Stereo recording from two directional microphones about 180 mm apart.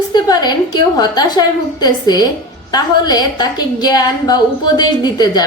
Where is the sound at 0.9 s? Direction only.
20° left (ahead or behind).